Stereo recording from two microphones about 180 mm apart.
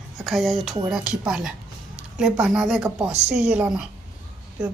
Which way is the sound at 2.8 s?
15° right (ahead or behind).